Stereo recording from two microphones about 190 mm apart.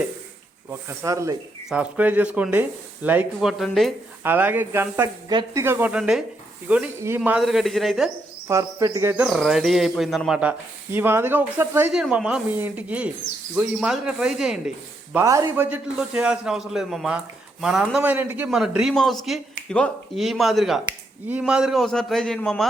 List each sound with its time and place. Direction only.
0.7 s speech: 15° right (ahead or behind)
1.7 s a man's voice: 5° right (ahead or behind)
4.2 s a man's voice: 10° right (ahead or behind)
8.4 s speech: 15° right (ahead or behind)
9.2 s a man's voice: centre (ahead or behind)
15.1 s a man's voice: 15° right (ahead or behind); by 22.6 s centre (ahead or behind)